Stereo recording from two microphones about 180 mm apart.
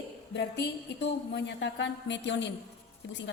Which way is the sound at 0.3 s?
70° left (ahead or behind).